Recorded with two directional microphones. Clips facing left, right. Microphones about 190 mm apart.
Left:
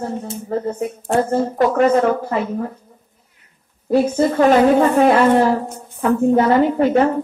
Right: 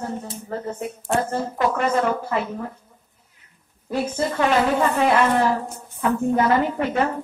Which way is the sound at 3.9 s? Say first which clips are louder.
Left 8 dB; 40° left (ahead or behind).